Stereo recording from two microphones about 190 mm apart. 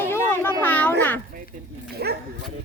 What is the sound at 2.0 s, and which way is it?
Speech, 55° right (ahead or behind).